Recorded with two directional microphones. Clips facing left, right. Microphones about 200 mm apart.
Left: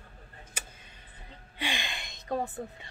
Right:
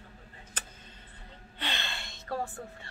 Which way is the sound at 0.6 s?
10° left (ahead or behind).